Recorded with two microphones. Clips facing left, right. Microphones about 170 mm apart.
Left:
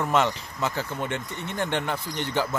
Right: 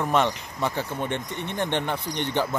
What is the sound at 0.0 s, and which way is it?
Speech, 15° right (ahead or behind).